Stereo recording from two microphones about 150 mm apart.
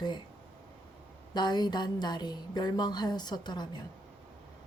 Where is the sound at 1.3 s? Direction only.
30° left (ahead or behind).